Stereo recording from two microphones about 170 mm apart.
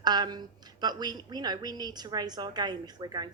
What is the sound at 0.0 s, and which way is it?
Speech, 25° right (ahead or behind).